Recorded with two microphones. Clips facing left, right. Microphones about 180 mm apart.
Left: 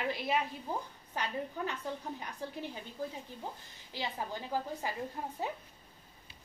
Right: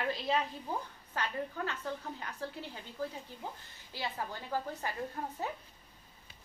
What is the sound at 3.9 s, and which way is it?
A woman's voice, 15° left (ahead or behind).